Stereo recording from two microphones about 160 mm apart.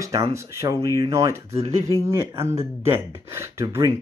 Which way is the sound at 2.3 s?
15° right (ahead or behind).